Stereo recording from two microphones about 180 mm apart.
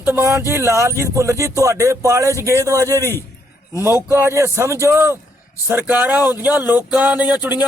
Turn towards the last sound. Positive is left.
turn(degrees=-10)  # may be behind; listen again after turning